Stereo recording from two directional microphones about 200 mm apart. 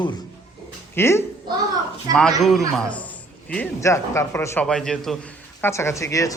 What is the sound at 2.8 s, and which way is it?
A man's voice, 5° left (ahead or behind).